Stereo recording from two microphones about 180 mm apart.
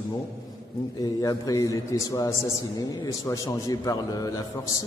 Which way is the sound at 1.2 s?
20° left (ahead or behind).